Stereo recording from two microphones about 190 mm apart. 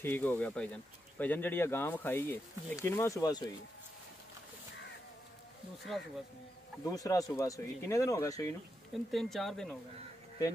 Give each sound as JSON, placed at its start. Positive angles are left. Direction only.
{"t": 0.0, "sound": "speech", "side_deg": 10}
{"t": 6.8, "sound": "speech", "side_deg": 20}
{"t": 8.9, "sound": "speech", "side_deg": 0}